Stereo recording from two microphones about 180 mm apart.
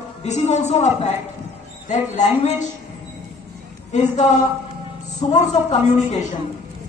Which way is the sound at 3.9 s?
40° left (ahead or behind).